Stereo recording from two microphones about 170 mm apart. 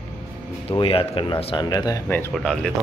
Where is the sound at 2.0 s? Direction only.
10° left (ahead or behind).